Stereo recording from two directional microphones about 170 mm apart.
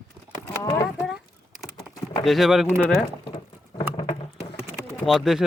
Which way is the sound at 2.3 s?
Centre (ahead or behind).